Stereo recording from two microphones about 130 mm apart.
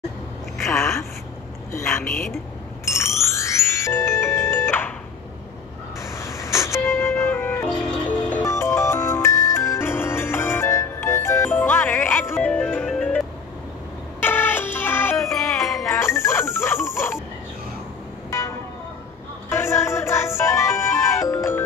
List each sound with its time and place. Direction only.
0.7 s a sound: 20° left (ahead or behind)
1.7 s a woman's voice: 20° left (ahead or behind)
3.3 s music: 20° left (ahead or behind)
6.1 s music: 20° left (ahead or behind)
14.2 s music: 15° left (ahead or behind)
15.3 s music: centre (ahead or behind)
16.0 s music: 20° left (ahead or behind)
19.5 s music: 20° left (ahead or behind)